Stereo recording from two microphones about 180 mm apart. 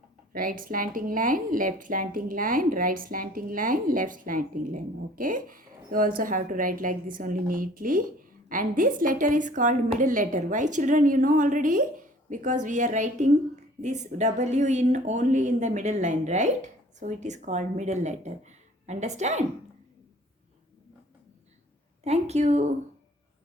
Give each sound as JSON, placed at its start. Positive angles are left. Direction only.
{"t": 0.3, "sound": "speech", "side_deg": -50}
{"t": 22.0, "sound": "speech", "side_deg": -35}